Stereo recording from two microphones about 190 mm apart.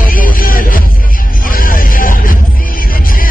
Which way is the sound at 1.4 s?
50° left (ahead or behind).